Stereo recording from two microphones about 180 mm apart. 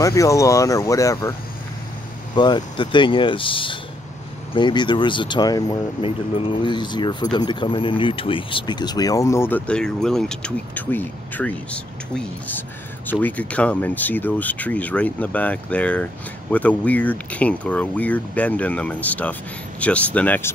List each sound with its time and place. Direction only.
0.0 s speech: 15° left (ahead or behind)
2.3 s speech: 25° left (ahead or behind)